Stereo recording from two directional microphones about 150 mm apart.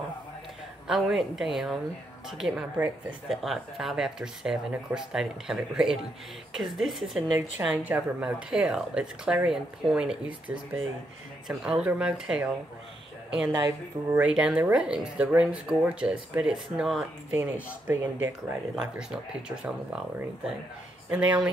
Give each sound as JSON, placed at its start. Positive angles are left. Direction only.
{"t": 0.8, "sound": "speech", "side_deg": -5}
{"t": 7.3, "sound": "speech", "side_deg": -10}
{"t": 11.4, "sound": "speech", "side_deg": -5}
{"t": 13.5, "sound": "a woman's voice", "side_deg": -20}
{"t": 14.2, "sound": "speech", "side_deg": -5}
{"t": 21.1, "sound": "speech", "side_deg": -10}